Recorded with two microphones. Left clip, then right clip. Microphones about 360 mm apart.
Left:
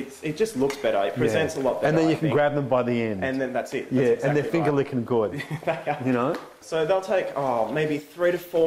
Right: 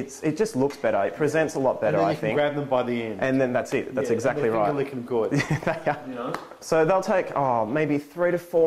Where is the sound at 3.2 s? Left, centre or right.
Right.